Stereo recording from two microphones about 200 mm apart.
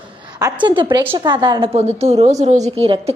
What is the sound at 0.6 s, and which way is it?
A woman's voice, 25° right (ahead or behind).